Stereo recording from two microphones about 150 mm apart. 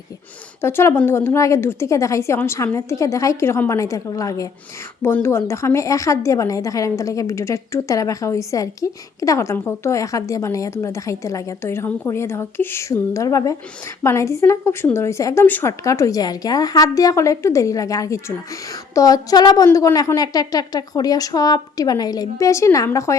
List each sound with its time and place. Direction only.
0.6 s a woman's voice: 15° left (ahead or behind)